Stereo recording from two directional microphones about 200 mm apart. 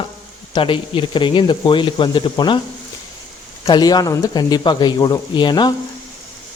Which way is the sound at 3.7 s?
20° left (ahead or behind).